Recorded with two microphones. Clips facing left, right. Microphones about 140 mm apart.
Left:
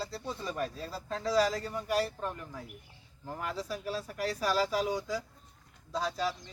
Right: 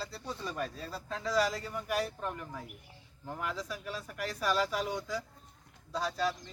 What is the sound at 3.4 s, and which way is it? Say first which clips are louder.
Speech: left 3 dB; 35° left (ahead or behind).